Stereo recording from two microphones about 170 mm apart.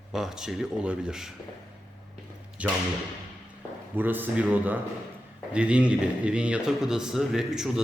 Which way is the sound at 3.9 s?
10° right (ahead or behind).